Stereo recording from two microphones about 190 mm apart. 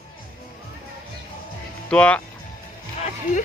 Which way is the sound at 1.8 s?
5° left (ahead or behind).